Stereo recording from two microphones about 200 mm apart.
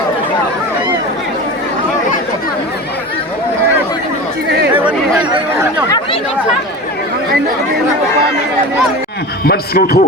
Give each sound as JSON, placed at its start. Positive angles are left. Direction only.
{"t": 9.4, "sound": "a man's voice", "side_deg": 50}